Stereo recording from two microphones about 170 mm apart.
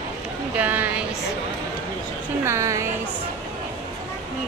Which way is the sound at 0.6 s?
10° right (ahead or behind).